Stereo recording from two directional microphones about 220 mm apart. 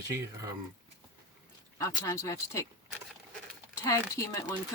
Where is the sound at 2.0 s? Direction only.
15° left (ahead or behind).